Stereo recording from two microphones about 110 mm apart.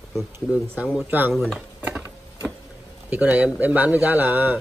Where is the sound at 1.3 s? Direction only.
Centre (ahead or behind).